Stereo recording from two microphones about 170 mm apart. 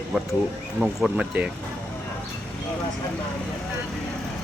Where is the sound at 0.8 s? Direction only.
5° right (ahead or behind).